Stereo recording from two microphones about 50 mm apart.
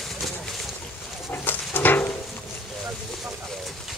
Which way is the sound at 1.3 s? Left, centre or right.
Left.